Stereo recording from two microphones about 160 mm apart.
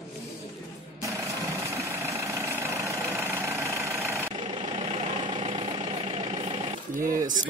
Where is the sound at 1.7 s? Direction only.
20° right (ahead or behind).